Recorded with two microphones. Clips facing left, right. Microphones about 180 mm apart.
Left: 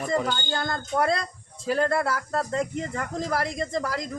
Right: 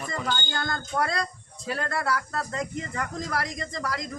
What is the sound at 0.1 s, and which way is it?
Speech, 30° left (ahead or behind).